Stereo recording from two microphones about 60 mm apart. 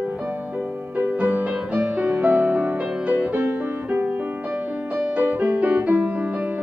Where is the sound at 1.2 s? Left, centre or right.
Right.